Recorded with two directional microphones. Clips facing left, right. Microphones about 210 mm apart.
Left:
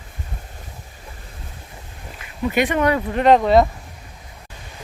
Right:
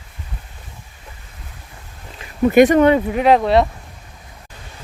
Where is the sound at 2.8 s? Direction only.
25° right (ahead or behind).